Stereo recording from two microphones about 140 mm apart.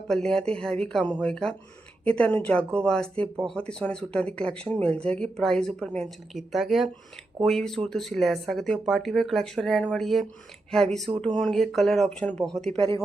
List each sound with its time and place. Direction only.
0.1 s speech: 5° left (ahead or behind)